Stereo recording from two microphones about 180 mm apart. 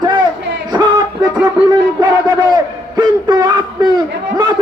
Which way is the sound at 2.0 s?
25° right (ahead or behind).